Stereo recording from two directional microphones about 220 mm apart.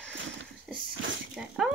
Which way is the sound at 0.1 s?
60° right (ahead or behind).